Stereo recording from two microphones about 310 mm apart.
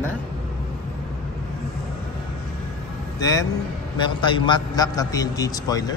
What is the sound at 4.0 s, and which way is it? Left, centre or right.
A man's voice, centre.